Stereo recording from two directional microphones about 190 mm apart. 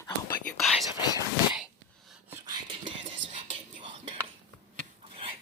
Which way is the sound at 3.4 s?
25° right (ahead or behind).